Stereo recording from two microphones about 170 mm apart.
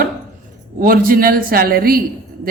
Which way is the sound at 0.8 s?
55° right (ahead or behind).